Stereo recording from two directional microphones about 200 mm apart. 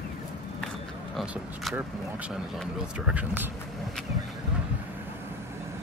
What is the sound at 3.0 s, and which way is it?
Speech, 5° right (ahead or behind).